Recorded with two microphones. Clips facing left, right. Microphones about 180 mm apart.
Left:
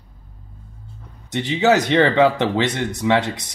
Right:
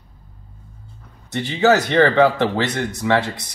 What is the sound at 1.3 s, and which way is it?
Speech, 20° left (ahead or behind).